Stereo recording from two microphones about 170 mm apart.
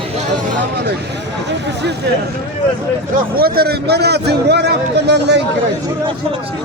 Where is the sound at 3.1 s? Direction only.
65° right (ahead or behind); by 5.4 s 85° right.